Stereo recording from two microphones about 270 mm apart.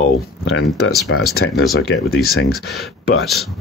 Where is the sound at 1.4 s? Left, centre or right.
Left.